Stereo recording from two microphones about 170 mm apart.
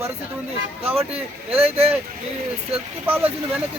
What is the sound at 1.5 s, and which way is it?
Speech, 35° right (ahead or behind).